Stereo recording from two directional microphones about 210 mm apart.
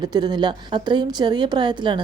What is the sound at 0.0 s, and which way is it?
A woman's voice, 20° right (ahead or behind).